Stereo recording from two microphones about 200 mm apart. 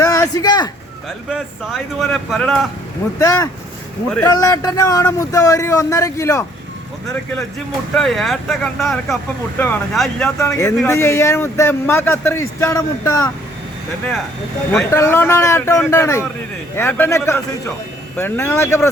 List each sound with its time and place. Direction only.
0.0 s a sound: 15° left (ahead or behind)
1.3 s speech: centre (ahead or behind)
3.2 s speech: 15° left (ahead or behind)
7.9 s speech: centre (ahead or behind)
10.4 s speech: 15° left (ahead or behind)
14.8 s speech: 15° left (ahead or behind)